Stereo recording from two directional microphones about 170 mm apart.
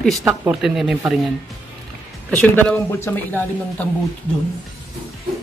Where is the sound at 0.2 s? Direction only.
15° right (ahead or behind).